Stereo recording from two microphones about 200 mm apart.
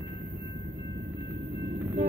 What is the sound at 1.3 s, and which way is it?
Vehicle, 35° right (ahead or behind).